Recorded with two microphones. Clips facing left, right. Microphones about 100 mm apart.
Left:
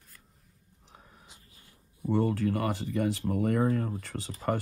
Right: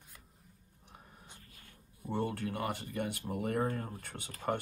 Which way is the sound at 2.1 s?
80° left.